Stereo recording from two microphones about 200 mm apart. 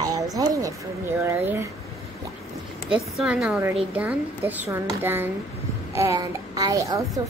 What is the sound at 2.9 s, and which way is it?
A woman's voice, centre (ahead or behind).